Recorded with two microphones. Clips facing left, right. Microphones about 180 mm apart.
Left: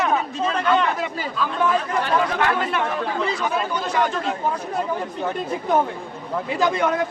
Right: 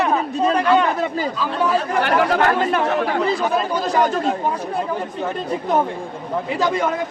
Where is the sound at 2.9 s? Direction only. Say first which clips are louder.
Right 5 dB; 75° right (ahead or behind).